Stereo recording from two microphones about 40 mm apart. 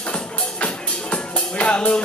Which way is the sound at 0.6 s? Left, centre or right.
Left.